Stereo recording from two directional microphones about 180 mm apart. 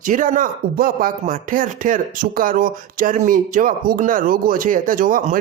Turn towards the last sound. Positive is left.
turn(degrees=-50)  # may be behind; listen again after turning